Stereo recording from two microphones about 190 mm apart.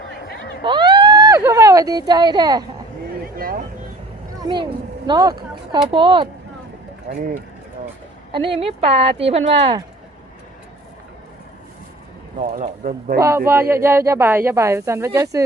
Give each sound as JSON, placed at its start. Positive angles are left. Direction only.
{"t": 0.6, "sound": "a sound", "side_deg": -25}
{"t": 3.3, "sound": "speech", "side_deg": -50}
{"t": 4.4, "sound": "speech", "side_deg": -25}
{"t": 7.1, "sound": "speech", "side_deg": -40}
{"t": 8.5, "sound": "speech", "side_deg": -30}
{"t": 12.4, "sound": "speech", "side_deg": -40}
{"t": 13.5, "sound": "speech", "side_deg": -15}